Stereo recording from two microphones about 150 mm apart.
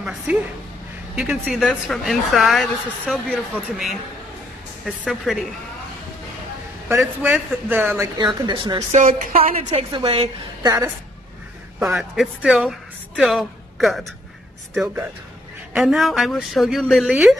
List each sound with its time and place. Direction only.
0.3 s a man's voice: 10° right (ahead or behind)
6.9 s a man's voice: 15° right (ahead or behind)
8.2 s speech: 30° right (ahead or behind)
8.9 s a woman's voice: 55° right (ahead or behind); by 10.7 s 35° right (ahead or behind)
11.9 s a woman's voice: centre (ahead or behind)
15.7 s a woman's voice: 5° right (ahead or behind)